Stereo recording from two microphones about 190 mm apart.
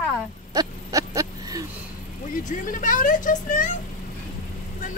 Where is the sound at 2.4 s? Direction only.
45° left (ahead or behind).